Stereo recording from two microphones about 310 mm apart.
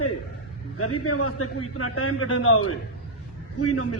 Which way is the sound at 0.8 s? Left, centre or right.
Left.